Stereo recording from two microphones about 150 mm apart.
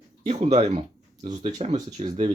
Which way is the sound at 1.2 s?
50° right (ahead or behind).